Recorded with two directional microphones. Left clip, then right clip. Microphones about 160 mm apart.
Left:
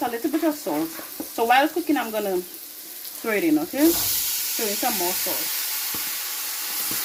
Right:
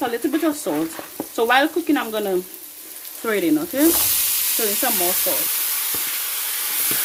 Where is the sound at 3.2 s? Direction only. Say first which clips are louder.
Right 2 dB; 45° right (ahead or behind).